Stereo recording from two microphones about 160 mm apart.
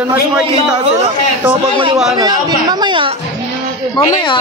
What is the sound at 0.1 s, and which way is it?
Speech, 5° right (ahead or behind).